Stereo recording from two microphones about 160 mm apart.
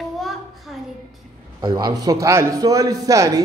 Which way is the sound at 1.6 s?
25° right (ahead or behind).